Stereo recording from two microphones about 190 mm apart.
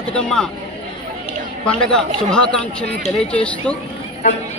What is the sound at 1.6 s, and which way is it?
A man's voice, 5° left (ahead or behind).